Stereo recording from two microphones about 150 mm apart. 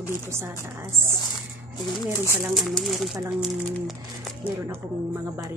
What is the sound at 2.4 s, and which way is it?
Speech, centre (ahead or behind).